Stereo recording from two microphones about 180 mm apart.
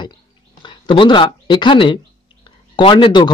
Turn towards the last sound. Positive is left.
turn(degrees=25)  # may be behind; listen again after turning